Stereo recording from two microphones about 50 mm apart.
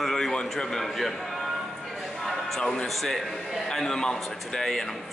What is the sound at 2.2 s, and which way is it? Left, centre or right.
A man's voice, centre.